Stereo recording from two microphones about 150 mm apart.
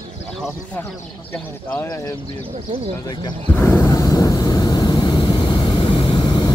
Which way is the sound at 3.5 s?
20° left (ahead or behind).